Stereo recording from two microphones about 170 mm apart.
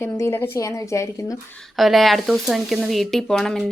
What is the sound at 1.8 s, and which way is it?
A woman's voice, centre (ahead or behind).